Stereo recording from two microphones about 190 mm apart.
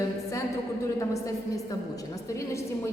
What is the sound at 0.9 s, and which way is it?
A woman's voice, 15° left (ahead or behind).